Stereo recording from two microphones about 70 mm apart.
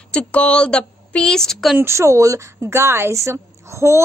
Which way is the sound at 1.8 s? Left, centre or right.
Right.